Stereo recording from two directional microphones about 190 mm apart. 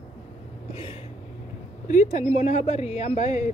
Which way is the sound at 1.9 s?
40° left (ahead or behind).